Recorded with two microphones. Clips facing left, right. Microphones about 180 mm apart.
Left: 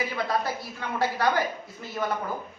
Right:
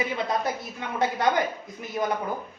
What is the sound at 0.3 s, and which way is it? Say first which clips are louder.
A woman's voice: right 1 dB; 20° right (ahead or behind).